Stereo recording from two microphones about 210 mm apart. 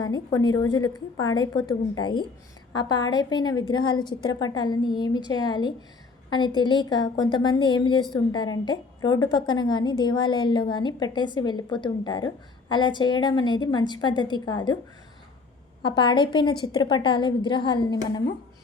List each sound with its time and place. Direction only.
0.0 s a woman's voice: 20° left (ahead or behind)
15.8 s a woman's voice: 20° left (ahead or behind)